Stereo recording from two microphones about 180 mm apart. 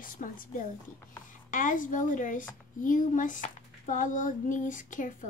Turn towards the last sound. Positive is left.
turn(degrees=45)  # may be behind; listen again after turning